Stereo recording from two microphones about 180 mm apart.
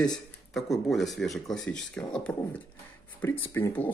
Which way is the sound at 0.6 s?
Centre (ahead or behind).